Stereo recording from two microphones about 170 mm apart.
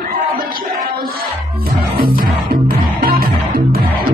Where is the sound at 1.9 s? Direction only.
60° right (ahead or behind).